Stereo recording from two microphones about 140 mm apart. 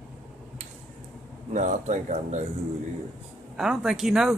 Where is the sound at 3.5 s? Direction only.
5° right (ahead or behind).